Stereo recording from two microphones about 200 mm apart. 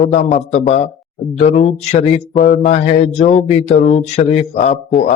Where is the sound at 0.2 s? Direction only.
35° left (ahead or behind).